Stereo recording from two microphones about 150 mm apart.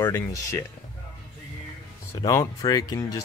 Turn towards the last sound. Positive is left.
turn(degrees=25)  # may be behind; listen again after turning